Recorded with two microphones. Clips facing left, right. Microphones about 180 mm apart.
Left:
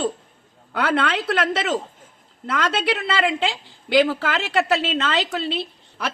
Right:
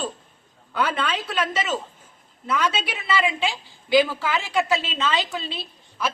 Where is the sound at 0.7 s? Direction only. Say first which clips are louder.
Left 3 dB; 65° left (ahead or behind).